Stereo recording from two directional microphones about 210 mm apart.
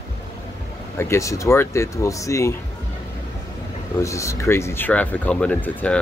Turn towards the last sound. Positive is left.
turn(degrees=5)  # may be behind; listen again after turning